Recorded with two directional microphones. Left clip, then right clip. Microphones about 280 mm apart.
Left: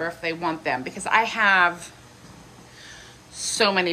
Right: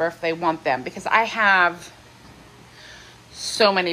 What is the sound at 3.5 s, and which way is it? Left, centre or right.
Speech, centre.